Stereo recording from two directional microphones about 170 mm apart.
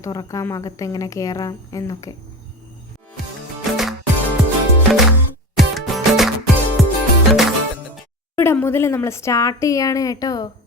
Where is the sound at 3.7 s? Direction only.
Centre (ahead or behind).